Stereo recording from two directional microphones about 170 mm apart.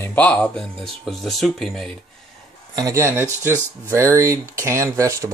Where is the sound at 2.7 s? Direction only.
20° right (ahead or behind).